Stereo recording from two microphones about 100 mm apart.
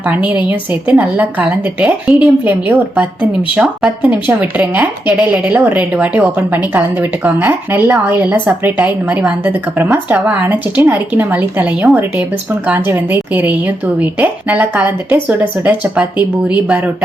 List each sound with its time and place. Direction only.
0.0 s a woman's voice: 15° right (ahead or behind)